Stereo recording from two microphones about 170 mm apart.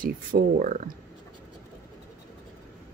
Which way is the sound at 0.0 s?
50° right (ahead or behind).